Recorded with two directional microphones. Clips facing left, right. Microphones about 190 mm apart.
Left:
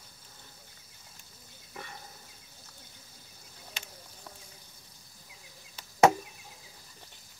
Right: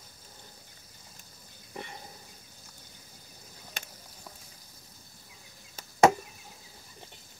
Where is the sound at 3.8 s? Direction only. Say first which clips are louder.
Right 3 dB; 50° right (ahead or behind).